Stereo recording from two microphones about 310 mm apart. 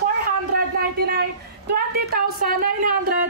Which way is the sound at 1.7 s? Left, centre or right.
Right.